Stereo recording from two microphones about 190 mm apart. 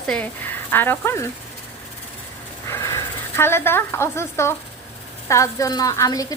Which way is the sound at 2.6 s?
15° left (ahead or behind).